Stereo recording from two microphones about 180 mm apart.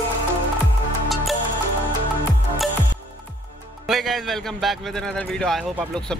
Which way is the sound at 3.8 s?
Centre (ahead or behind).